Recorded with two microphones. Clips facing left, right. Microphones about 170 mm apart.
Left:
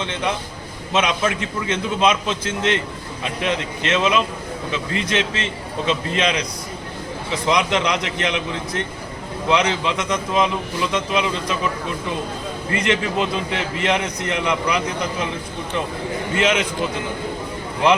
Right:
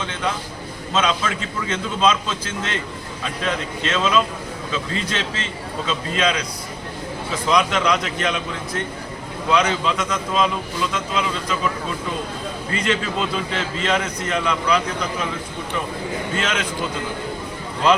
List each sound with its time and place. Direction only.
0.0 s a man's voice: 20° left (ahead or behind)
7.4 s a man's voice: 20° left (ahead or behind)
12.7 s a man's voice: 20° left (ahead or behind)
16.3 s a man's voice: 15° left (ahead or behind)